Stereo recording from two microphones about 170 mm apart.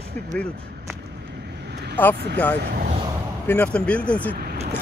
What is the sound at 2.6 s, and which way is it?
Speech, 60° right (ahead or behind).